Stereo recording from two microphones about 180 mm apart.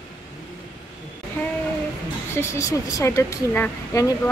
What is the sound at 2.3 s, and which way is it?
Speech, 15° left (ahead or behind).